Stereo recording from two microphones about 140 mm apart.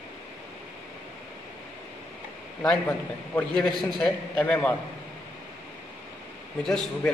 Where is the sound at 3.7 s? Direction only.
Centre (ahead or behind).